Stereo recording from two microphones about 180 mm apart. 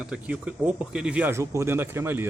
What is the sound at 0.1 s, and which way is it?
Speech, 5° right (ahead or behind).